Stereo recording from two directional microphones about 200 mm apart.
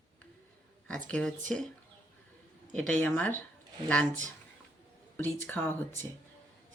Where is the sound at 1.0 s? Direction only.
5° left (ahead or behind).